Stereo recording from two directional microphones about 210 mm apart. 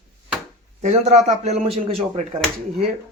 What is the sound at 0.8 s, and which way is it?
Speech, 35° right (ahead or behind).